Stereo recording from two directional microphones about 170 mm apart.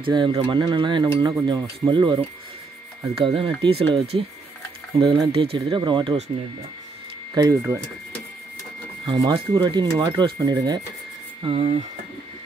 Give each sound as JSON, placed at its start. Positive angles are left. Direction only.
{"t": 0.0, "sound": "speech", "side_deg": -25}
{"t": 3.2, "sound": "speech", "side_deg": -30}
{"t": 5.3, "sound": "speech", "side_deg": -35}
{"t": 7.3, "sound": "speech", "side_deg": -20}
{"t": 9.0, "sound": "speech", "side_deg": -25}
{"t": 11.4, "sound": "speech", "side_deg": -35}